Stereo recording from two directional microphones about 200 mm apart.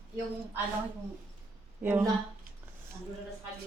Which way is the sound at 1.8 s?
10° right (ahead or behind).